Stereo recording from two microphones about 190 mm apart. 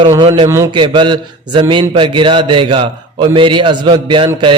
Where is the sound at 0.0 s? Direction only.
25° right (ahead or behind).